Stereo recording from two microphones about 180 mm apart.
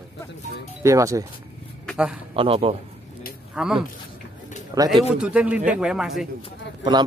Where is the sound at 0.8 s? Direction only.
15° right (ahead or behind).